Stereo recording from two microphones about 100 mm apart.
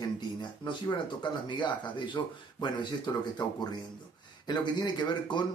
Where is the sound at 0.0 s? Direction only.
45° left (ahead or behind).